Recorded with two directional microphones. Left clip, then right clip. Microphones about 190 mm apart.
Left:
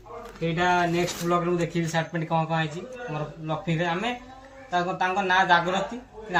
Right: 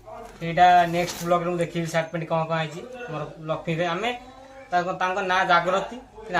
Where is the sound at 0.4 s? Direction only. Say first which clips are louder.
Right 6 dB; 20° right (ahead or behind).